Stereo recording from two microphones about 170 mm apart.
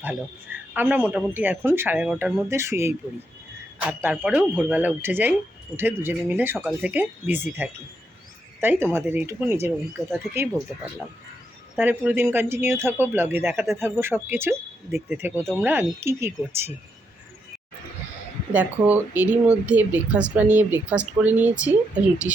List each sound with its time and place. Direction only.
0.0 s speech: 10° right (ahead or behind)
11.8 s speech: 10° right (ahead or behind)
18.5 s speech: 10° right (ahead or behind)